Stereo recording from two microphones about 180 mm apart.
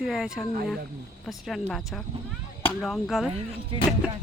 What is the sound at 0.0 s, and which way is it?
Speech, centre (ahead or behind).